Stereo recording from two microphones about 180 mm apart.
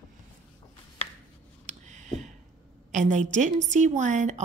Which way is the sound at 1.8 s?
40° right (ahead or behind).